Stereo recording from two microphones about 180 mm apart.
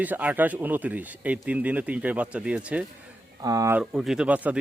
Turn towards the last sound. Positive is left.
turn(degrees=-10)  # may be behind; listen again after turning